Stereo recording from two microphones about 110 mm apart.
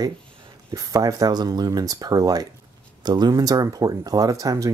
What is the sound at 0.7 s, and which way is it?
Speech, 30° right (ahead or behind).